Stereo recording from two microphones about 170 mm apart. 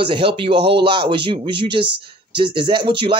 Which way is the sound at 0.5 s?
80° right.